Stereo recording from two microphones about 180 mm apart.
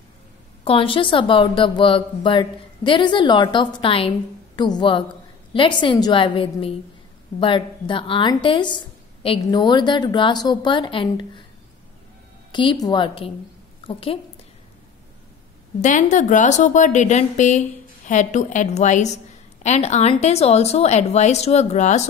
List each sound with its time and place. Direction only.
0.7 s a woman's voice: 30° left (ahead or behind)
12.5 s a woman's voice: 25° left (ahead or behind)
15.8 s a woman's voice: 45° left (ahead or behind)